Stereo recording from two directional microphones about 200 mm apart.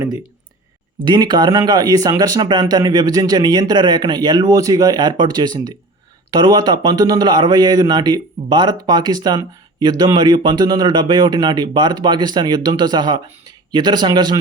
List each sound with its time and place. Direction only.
1.0 s speech: 20° right (ahead or behind)